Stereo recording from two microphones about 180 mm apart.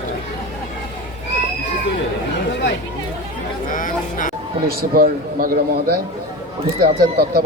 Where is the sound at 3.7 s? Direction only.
45° left (ahead or behind).